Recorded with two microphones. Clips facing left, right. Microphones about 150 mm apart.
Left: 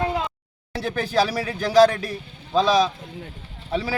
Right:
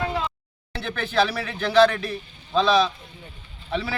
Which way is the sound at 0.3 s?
40° left (ahead or behind).